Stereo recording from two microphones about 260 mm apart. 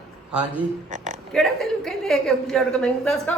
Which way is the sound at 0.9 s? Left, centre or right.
Right.